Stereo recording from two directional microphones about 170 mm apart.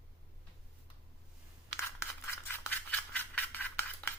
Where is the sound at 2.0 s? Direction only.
15° left (ahead or behind).